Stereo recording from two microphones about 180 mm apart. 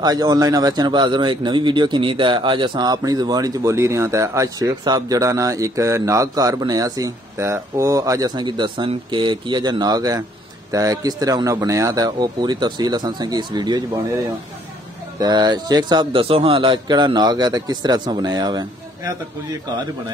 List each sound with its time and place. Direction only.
0.0 s a man's voice: 20° right (ahead or behind)
15.1 s a man's voice: 20° right (ahead or behind)